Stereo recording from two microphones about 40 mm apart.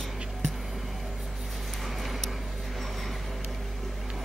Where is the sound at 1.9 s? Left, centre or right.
Centre.